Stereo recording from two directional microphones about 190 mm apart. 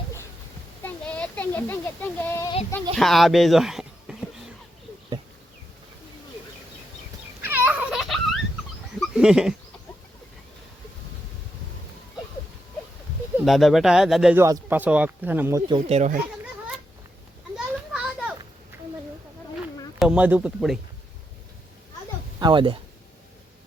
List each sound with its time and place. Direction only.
0.8 s a child's voice: 10° left (ahead or behind)
2.9 s speech: centre (ahead or behind)
7.4 s a sound: 10° right (ahead or behind)
13.4 s speech: centre (ahead or behind)
14.4 s speech: 15° right (ahead or behind)
15.7 s speech: 35° right (ahead or behind)
17.9 s children playing: 5° right (ahead or behind)
20.0 s speech: 5° right (ahead or behind)
22.4 s speech: 25° right (ahead or behind)